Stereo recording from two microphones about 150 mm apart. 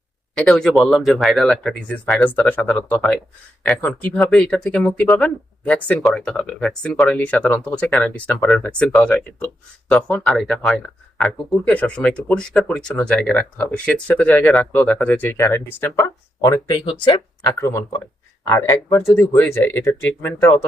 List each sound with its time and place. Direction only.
0.3 s speech: 5° left (ahead or behind); by 17.5 s 30° left (ahead or behind)
17.5 s speech: 20° left (ahead or behind)